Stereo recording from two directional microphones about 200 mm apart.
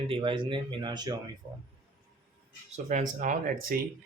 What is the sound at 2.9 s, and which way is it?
Speech, 40° right (ahead or behind).